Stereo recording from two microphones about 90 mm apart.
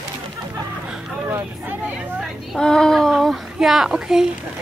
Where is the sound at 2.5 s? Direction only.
10° left (ahead or behind); by 4.3 s 10° right (ahead or behind).